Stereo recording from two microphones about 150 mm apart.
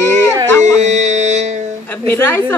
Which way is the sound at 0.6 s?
50° right (ahead or behind).